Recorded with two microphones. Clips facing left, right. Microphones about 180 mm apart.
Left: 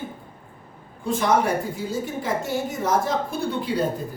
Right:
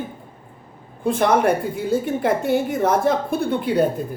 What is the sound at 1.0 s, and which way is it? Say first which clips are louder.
A woman's voice: right 4 dB; 60° right (ahead or behind).